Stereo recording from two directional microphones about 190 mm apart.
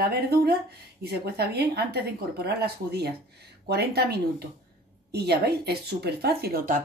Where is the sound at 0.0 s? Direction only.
55° right (ahead or behind).